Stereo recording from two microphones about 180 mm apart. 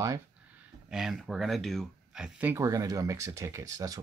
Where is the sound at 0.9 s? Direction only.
5° right (ahead or behind); by 3.9 s 20° right (ahead or behind).